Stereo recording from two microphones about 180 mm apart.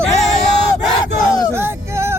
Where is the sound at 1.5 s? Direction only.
15° right (ahead or behind).